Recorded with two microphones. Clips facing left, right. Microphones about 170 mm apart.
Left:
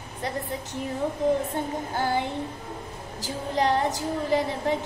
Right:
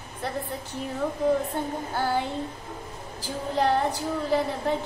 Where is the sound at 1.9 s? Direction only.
15° left (ahead or behind).